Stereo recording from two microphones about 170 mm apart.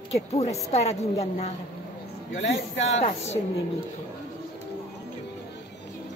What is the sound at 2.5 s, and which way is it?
Speech, 40° left (ahead or behind).